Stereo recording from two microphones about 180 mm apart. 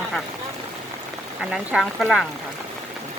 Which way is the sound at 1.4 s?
5° right (ahead or behind).